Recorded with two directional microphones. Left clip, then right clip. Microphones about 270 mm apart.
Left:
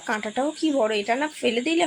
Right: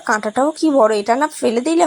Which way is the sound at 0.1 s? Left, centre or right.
Centre.